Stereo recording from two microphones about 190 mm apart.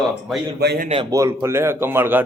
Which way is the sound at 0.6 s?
60° right (ahead or behind).